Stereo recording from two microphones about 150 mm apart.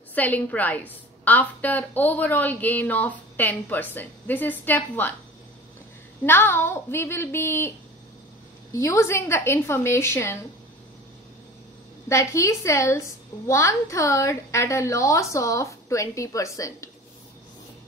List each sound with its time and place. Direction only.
0.1 s a woman's voice: 10° left (ahead or behind)
6.2 s a woman's voice: 15° left (ahead or behind)
8.7 s a woman's voice: 20° left (ahead or behind)
12.1 s a woman's voice: 20° left (ahead or behind)